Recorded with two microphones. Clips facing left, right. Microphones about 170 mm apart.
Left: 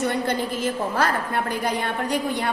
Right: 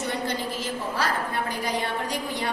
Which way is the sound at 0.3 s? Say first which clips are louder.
Left 5 dB; 55° left (ahead or behind).